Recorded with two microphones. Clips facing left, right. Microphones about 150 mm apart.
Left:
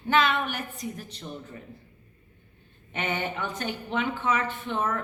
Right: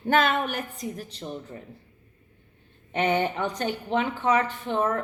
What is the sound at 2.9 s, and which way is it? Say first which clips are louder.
A woman's voice: right 7 dB; 40° right (ahead or behind).